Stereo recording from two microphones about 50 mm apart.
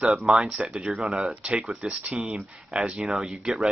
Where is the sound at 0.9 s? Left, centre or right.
Centre.